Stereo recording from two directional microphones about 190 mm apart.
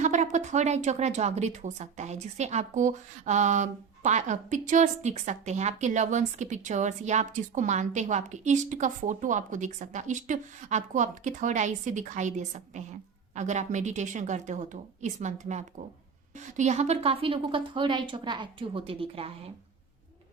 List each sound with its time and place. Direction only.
0.0 s a woman's voice: 40° right (ahead or behind)